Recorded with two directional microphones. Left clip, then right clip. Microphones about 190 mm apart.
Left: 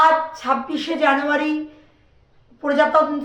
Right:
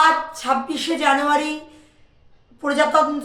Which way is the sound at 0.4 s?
25° right (ahead or behind).